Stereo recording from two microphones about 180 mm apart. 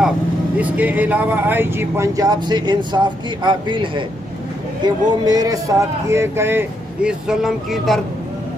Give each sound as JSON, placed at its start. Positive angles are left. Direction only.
{"t": 0.6, "sound": "speech", "side_deg": -10}